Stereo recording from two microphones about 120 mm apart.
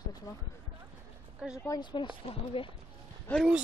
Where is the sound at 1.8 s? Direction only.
45° left (ahead or behind).